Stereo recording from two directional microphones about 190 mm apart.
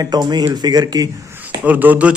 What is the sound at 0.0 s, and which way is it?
A man's voice, 20° right (ahead or behind).